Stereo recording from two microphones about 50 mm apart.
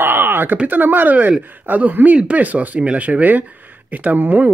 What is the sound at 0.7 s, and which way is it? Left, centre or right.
Speech, right.